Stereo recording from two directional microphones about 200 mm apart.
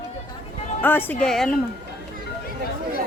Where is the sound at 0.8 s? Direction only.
10° left (ahead or behind).